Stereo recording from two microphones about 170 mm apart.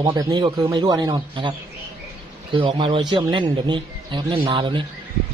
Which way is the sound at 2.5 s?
30° right (ahead or behind).